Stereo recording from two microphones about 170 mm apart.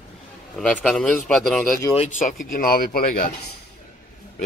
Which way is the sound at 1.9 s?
45° left (ahead or behind).